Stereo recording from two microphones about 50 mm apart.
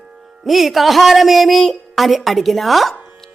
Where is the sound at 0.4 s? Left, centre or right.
Centre.